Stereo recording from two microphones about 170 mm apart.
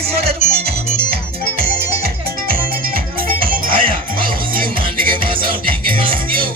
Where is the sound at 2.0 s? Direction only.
60° right (ahead or behind).